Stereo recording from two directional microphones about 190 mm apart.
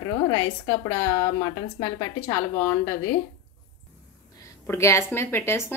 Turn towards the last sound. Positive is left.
turn(degrees=15)  # may be behind; listen again after turning